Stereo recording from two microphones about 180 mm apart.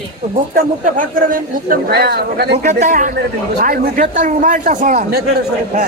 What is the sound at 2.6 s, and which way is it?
A man's voice, 45° right (ahead or behind).